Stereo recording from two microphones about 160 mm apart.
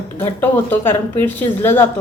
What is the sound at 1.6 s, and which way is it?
Speech, 15° left (ahead or behind).